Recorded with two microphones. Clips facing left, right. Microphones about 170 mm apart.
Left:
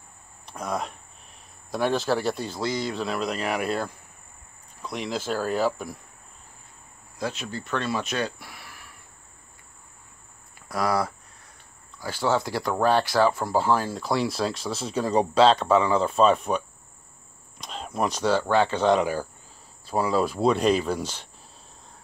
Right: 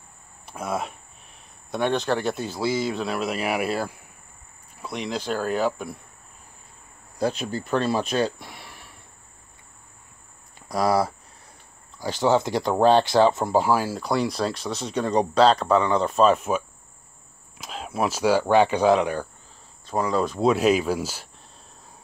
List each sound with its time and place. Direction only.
0.5 s speech: 5° right (ahead or behind)
7.2 s speech: 35° right (ahead or behind)
10.7 s speech: 25° right (ahead or behind)
13.7 s speech: 5° right (ahead or behind)
18.9 s speech: 5° left (ahead or behind)